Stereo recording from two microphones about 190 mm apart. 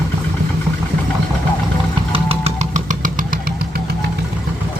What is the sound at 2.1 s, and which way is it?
Vehicle, 30° right (ahead or behind).